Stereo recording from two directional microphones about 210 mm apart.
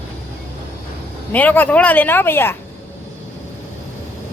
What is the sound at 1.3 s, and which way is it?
Speech, 10° left (ahead or behind).